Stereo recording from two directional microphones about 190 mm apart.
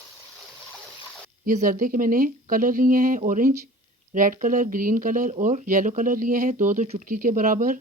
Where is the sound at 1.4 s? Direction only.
45° right (ahead or behind).